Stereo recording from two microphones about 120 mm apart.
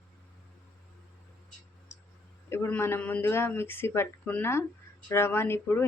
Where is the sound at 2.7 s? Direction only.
15° left (ahead or behind).